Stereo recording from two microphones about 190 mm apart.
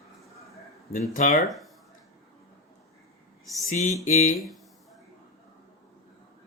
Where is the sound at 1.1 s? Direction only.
45° left (ahead or behind).